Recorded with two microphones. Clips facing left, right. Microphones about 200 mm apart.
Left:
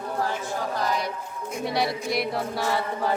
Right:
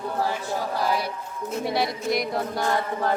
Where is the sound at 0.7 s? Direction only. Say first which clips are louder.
Right 2 dB; 10° right (ahead or behind).